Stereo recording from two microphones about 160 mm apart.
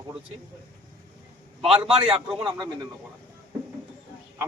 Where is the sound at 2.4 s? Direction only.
25° right (ahead or behind).